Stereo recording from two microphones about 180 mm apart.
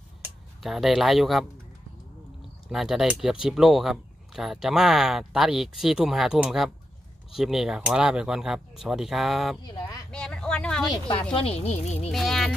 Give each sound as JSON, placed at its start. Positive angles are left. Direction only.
{"t": 0.2, "sound": "speech", "side_deg": 0}
{"t": 2.7, "sound": "speech", "side_deg": 0}
{"t": 9.6, "sound": "speech", "side_deg": 25}
{"t": 10.1, "sound": "vehicle", "side_deg": 5}
{"t": 10.9, "sound": "speech", "side_deg": 25}
{"t": 12.1, "sound": "speech", "side_deg": 0}